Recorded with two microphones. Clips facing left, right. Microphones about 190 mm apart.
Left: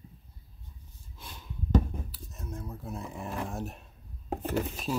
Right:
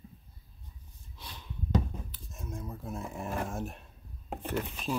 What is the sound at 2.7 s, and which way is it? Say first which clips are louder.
Speech: even; centre (ahead or behind).